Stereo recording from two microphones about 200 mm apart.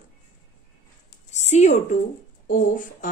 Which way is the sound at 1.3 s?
35° left (ahead or behind).